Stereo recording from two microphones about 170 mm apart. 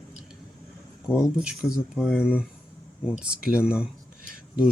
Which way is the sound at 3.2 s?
5° right (ahead or behind).